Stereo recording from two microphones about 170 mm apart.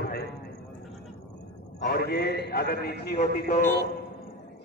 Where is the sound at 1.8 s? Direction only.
70° left (ahead or behind).